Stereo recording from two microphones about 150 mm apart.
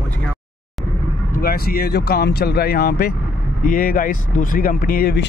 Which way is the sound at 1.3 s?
85° left.